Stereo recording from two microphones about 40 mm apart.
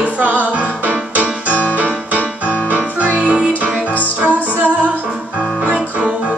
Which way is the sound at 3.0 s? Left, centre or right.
Left.